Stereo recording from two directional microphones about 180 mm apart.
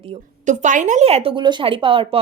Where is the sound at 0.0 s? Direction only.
40° right (ahead or behind).